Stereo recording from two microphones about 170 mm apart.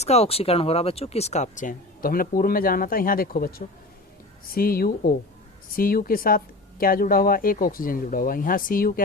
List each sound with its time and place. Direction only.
0.0 s speech: 40° left (ahead or behind); by 9.0 s 55° left (ahead or behind)